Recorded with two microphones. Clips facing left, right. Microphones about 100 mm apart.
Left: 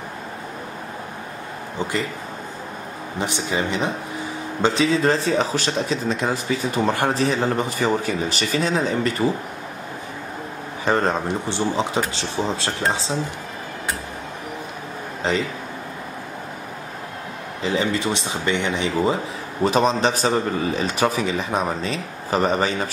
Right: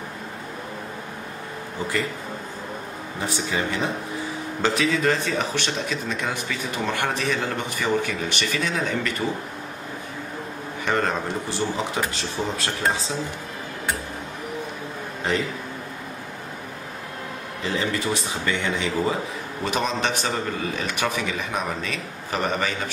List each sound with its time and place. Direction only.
3.2 s speech: 20° left (ahead or behind)
10.9 s speech: 30° left (ahead or behind)
17.6 s speech: 20° left (ahead or behind)
19.6 s speech: 35° left (ahead or behind)